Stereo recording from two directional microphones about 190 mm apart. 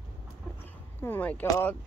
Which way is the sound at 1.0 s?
10° left (ahead or behind).